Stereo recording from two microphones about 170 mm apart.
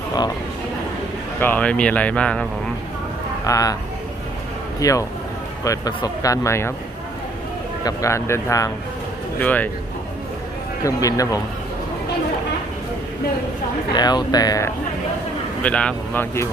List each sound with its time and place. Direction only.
1.4 s speech: 10° left (ahead or behind)
3.4 s speech: 20° left (ahead or behind)
4.8 s speech: 20° left (ahead or behind)
7.9 s speech: 15° left (ahead or behind)
10.8 s speech: 20° left (ahead or behind)
13.9 s speech: 25° left (ahead or behind)
15.6 s speech: 5° left (ahead or behind)